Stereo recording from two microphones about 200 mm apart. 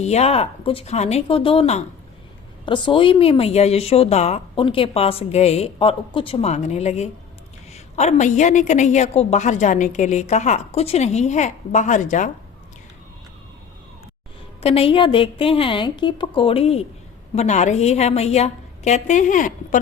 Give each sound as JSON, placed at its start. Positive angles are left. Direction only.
{"t": 0.0, "sound": "a woman's voice", "side_deg": 35}
{"t": 14.6, "sound": "a woman's voice", "side_deg": 30}